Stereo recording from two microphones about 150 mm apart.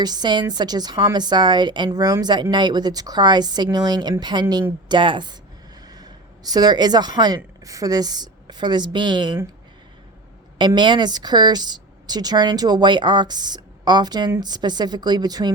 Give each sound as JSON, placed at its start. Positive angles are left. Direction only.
{"t": 0.0, "sound": "a woman's voice", "side_deg": -30}
{"t": 10.8, "sound": "a woman's voice", "side_deg": -30}